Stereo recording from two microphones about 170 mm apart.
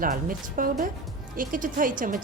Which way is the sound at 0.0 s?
55° right (ahead or behind).